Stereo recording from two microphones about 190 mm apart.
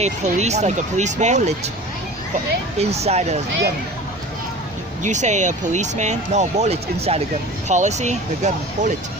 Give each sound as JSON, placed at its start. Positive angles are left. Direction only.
{"t": 0.0, "sound": "speech", "side_deg": -35}
{"t": 2.7, "sound": "speech", "side_deg": -35}
{"t": 5.0, "sound": "speech", "side_deg": -40}